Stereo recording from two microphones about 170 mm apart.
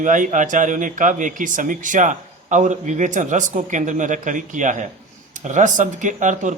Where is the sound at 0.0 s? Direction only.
50° right (ahead or behind).